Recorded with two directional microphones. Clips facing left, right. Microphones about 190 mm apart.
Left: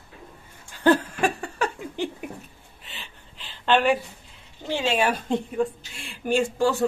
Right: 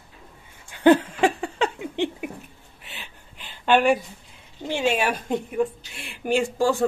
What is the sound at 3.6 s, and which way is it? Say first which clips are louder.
Speech: right 2 dB; 10° right (ahead or behind).